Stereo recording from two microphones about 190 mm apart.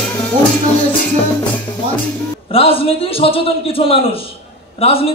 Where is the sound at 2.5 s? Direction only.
30° left (ahead or behind).